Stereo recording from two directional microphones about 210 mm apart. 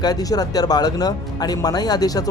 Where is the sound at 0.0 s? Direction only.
20° left (ahead or behind).